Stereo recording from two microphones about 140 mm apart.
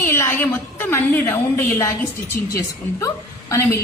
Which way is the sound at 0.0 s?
20° left (ahead or behind).